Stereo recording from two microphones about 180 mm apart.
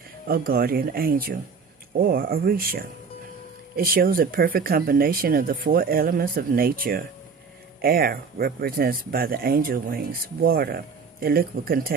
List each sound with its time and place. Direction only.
0.3 s speech: 55° right (ahead or behind)